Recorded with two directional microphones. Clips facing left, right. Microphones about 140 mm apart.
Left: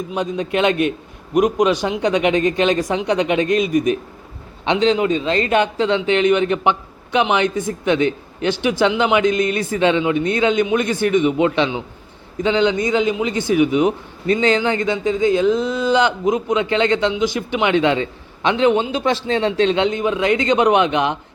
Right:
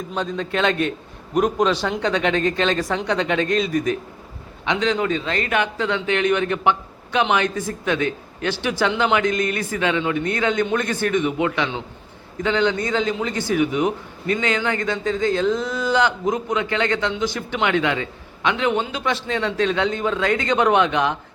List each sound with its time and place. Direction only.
0.1 s a man's voice: 15° left (ahead or behind)